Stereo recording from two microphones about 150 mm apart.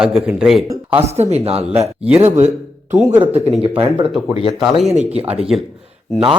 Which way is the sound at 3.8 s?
35° right (ahead or behind).